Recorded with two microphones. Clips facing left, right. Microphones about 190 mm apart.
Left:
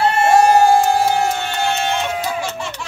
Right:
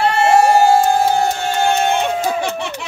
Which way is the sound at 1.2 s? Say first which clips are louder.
Right 3 dB; 40° right (ahead or behind).